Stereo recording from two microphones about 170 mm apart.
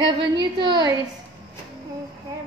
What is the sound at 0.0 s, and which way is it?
Speech, 30° right (ahead or behind).